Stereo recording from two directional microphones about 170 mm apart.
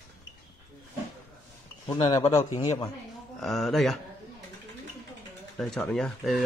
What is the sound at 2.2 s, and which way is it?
Speech, 40° left (ahead or behind).